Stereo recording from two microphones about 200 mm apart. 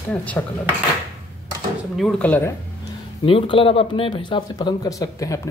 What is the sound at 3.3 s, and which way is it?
Speech, 25° left (ahead or behind).